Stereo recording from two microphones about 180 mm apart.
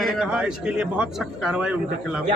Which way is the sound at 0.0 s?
5° right (ahead or behind).